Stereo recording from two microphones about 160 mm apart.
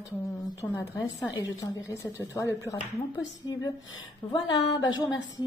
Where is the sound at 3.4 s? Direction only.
25° left (ahead or behind).